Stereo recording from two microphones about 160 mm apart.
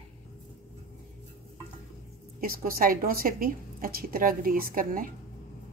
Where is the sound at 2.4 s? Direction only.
65° right (ahead or behind).